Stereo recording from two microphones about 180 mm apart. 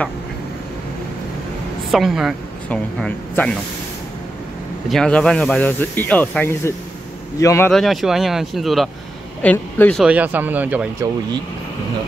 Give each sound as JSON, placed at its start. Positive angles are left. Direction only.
{"t": 1.9, "sound": "speech", "side_deg": 0}
{"t": 4.8, "sound": "speech", "side_deg": 5}
{"t": 7.7, "sound": "speech", "side_deg": 0}
{"t": 10.0, "sound": "speech", "side_deg": -10}